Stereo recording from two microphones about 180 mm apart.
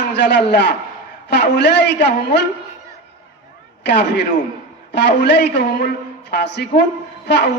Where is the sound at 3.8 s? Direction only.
70° left (ahead or behind).